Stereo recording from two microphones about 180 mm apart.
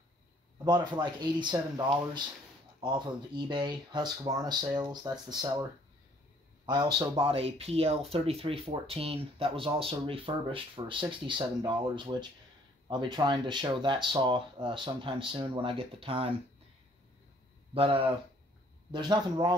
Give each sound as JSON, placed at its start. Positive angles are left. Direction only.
{"t": 0.9, "sound": "speech", "side_deg": -25}
{"t": 2.8, "sound": "speech", "side_deg": -25}
{"t": 17.7, "sound": "speech", "side_deg": -30}